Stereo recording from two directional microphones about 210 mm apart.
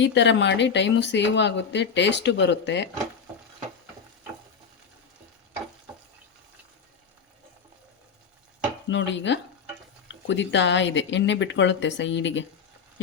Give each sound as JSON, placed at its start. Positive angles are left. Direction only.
{"t": 0.0, "sound": "speech", "side_deg": 60}
{"t": 8.9, "sound": "speech", "side_deg": 60}